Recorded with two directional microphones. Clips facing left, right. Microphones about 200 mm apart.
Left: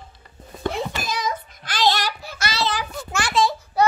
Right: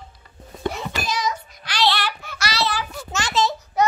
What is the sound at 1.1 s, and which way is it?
Child singing, 55° left (ahead or behind).